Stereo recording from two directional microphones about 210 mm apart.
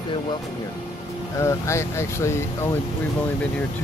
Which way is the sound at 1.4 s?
15° left (ahead or behind).